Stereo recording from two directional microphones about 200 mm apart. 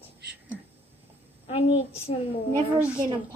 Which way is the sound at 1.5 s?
30° left (ahead or behind).